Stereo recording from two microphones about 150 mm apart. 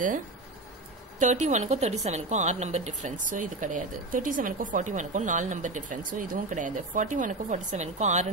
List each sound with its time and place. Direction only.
1.2 s a woman's voice: 50° right (ahead or behind)